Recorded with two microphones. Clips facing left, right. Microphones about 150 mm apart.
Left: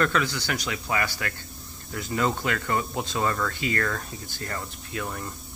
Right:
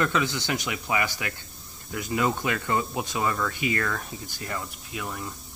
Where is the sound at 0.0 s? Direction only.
20° right (ahead or behind).